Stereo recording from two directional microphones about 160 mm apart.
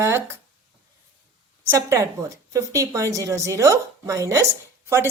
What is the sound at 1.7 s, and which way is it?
A woman's voice, 20° right (ahead or behind).